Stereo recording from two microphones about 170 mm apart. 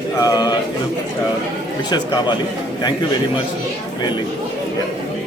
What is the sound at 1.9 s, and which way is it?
Speech, 25° left (ahead or behind).